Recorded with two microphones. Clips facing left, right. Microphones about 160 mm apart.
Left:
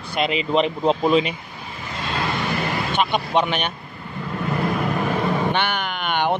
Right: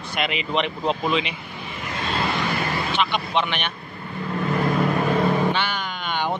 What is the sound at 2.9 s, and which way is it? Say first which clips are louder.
Speech: left 4 dB; 45° left (ahead or behind).